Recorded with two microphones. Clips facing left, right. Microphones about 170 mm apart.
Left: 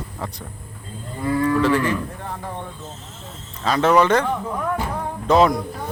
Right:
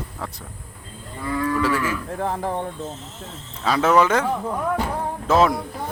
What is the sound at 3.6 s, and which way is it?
Speech, 5° right (ahead or behind).